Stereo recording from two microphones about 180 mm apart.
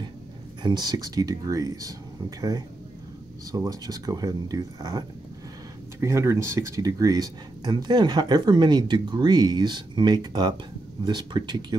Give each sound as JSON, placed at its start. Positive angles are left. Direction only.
{"t": 0.6, "sound": "speech", "side_deg": -25}